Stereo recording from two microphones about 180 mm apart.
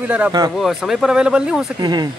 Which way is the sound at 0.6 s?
Centre (ahead or behind).